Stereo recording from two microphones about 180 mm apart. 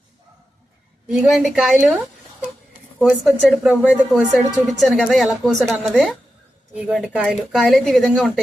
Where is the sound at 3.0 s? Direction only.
5° right (ahead or behind).